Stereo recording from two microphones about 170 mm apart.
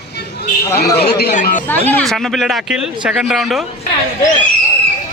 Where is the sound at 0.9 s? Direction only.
70° left (ahead or behind).